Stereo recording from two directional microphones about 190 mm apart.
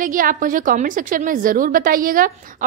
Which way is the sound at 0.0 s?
45° right (ahead or behind).